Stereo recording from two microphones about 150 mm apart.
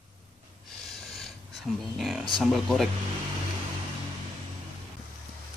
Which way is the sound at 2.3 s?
Centre (ahead or behind).